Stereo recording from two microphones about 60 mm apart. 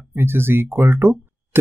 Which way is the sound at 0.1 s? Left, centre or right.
Right.